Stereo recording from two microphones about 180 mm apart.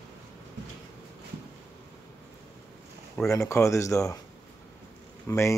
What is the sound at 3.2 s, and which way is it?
Speech, 15° left (ahead or behind).